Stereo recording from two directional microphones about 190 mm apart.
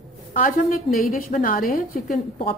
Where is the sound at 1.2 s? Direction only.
45° left (ahead or behind).